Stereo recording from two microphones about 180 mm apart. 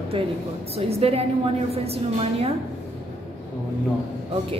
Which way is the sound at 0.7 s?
35° right (ahead or behind).